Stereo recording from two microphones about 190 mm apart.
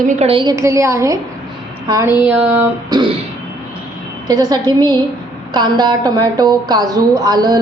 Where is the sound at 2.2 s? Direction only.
5° right (ahead or behind).